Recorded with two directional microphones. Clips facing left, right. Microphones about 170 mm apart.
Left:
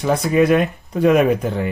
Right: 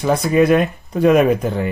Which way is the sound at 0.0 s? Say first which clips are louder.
Right 1 dB; 40° right (ahead or behind).